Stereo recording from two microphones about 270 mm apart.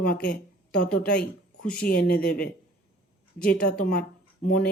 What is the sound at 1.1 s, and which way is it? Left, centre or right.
Speech, centre.